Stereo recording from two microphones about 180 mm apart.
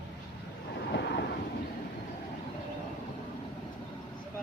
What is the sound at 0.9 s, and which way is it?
Vehicle, 65° left (ahead or behind).